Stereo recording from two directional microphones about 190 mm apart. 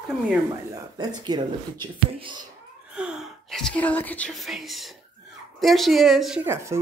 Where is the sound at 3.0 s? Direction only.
5° right (ahead or behind).